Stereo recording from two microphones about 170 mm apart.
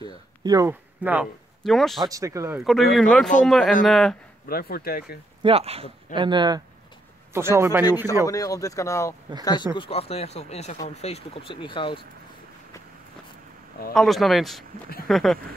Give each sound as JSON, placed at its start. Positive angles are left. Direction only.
{"t": 0.4, "sound": "speech", "side_deg": -25}
{"t": 0.7, "sound": "speech", "side_deg": -10}
{"t": 2.0, "sound": "speech", "side_deg": -20}
{"t": 2.6, "sound": "speech", "side_deg": 0}
{"t": 4.5, "sound": "speech", "side_deg": 60}
{"t": 5.4, "sound": "speech", "side_deg": -35}
{"t": 7.3, "sound": "speech", "side_deg": -15}
{"t": 8.3, "sound": "speech", "side_deg": 20}
{"t": 9.8, "sound": "speech", "side_deg": 35}
{"t": 13.9, "sound": "speech", "side_deg": 0}